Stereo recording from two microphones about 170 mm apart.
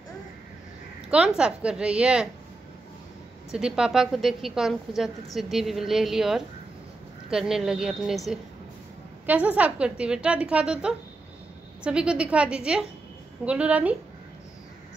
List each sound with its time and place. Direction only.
1.1 s a woman's voice: 5° right (ahead or behind)
3.5 s a woman's voice: 5° right (ahead or behind)
9.2 s a woman's voice: 10° right (ahead or behind)